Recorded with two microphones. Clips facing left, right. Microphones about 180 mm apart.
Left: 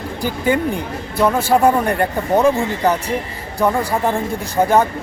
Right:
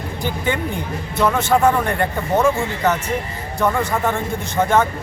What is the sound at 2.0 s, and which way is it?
Speech, 15° left (ahead or behind).